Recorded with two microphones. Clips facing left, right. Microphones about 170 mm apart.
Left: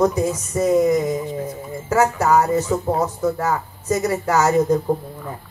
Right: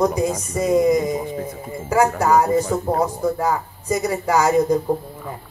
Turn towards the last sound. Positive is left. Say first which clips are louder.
# even
turn(degrees=-10)  # may be behind; listen again after turning